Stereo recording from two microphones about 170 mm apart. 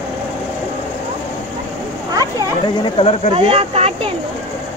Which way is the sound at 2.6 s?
35° left (ahead or behind).